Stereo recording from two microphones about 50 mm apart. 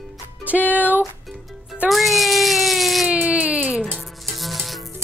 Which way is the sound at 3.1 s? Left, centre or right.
Right.